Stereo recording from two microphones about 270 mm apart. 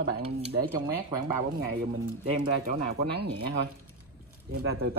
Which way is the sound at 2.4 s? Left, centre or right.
Right.